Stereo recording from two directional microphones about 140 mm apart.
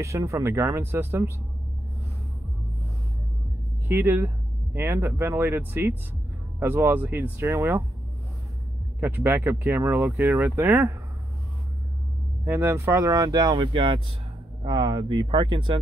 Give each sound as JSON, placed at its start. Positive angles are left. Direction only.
{"t": 0.0, "sound": "speech", "side_deg": -20}
{"t": 3.8, "sound": "speech", "side_deg": -15}
{"t": 9.0, "sound": "speech", "side_deg": -15}
{"t": 12.4, "sound": "speech", "side_deg": -15}